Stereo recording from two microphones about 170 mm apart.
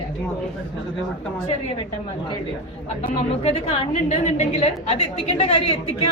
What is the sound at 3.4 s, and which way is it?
A woman's voice, 35° left (ahead or behind).